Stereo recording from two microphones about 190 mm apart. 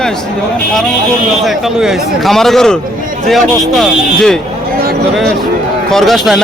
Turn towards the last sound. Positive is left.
turn(degrees=0)  # may be behind; listen again after turning